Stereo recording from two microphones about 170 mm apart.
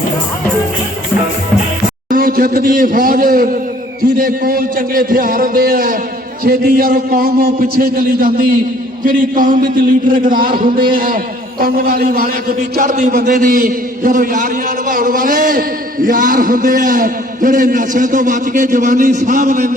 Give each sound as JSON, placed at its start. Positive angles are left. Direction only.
{"t": 2.0, "sound": "a man's voice", "side_deg": -55}